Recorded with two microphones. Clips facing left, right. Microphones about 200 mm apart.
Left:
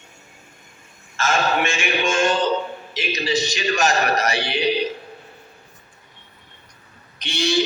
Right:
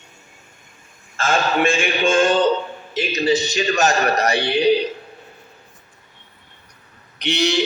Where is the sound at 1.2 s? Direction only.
30° right (ahead or behind).